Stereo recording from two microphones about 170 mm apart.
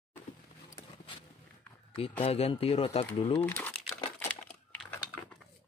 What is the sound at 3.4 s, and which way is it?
Speech, 10° left (ahead or behind).